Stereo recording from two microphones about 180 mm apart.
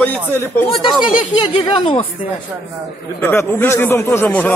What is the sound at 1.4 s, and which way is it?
Speech, 25° left (ahead or behind).